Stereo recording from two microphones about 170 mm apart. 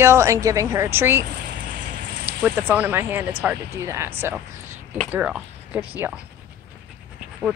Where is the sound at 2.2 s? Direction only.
10° right (ahead or behind).